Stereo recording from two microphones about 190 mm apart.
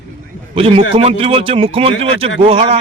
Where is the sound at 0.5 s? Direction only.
30° right (ahead or behind).